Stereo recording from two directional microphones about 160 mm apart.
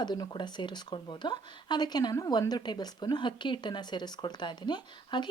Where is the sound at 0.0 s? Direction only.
25° left (ahead or behind).